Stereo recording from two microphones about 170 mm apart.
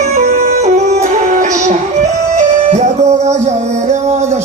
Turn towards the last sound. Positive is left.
turn(degrees=-40)  # may be behind; listen again after turning